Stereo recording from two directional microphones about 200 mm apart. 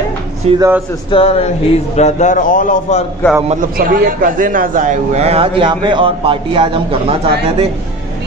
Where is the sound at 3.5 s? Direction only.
40° right (ahead or behind).